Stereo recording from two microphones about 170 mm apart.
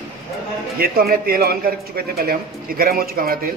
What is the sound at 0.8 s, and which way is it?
A man's voice, 60° right (ahead or behind).